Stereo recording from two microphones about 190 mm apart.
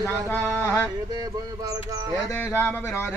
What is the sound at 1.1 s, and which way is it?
Speech, 20° right (ahead or behind).